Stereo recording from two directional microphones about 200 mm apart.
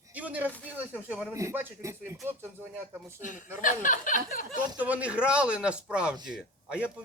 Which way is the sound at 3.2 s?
40° left (ahead or behind).